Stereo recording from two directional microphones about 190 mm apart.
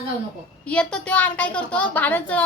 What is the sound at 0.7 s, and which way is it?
A woman's voice, 5° left (ahead or behind).